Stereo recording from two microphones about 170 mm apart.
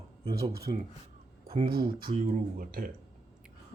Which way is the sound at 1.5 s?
35° right (ahead or behind).